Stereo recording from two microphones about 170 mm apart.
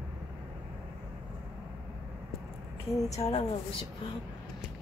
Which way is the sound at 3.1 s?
35° left (ahead or behind).